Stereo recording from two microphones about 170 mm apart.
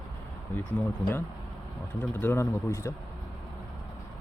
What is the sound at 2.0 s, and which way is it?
Speech, 10° left (ahead or behind).